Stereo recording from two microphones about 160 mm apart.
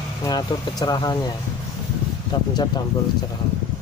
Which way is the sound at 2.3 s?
30° left (ahead or behind).